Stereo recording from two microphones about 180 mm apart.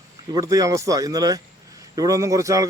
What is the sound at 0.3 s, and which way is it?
A man's voice, 20° right (ahead or behind).